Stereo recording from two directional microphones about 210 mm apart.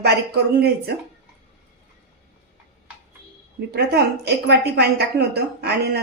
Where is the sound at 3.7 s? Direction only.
50° right (ahead or behind).